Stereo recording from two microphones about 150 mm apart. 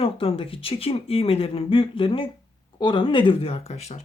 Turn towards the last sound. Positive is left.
turn(degrees=45)  # may be behind; listen again after turning